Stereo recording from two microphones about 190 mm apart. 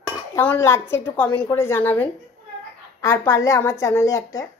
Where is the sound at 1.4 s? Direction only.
15° left (ahead or behind).